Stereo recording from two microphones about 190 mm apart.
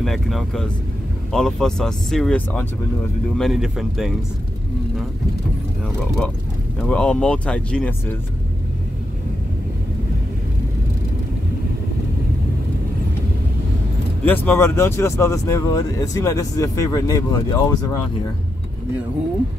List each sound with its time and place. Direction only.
0.0 s speech: centre (ahead or behind)
6.8 s speech: 5° left (ahead or behind)
14.2 s speech: 10° left (ahead or behind)